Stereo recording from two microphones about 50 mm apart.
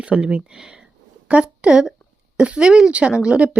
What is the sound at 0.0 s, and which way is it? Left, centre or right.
Speech, right.